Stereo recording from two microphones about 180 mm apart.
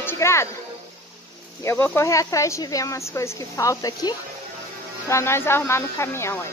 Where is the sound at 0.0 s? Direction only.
15° left (ahead or behind).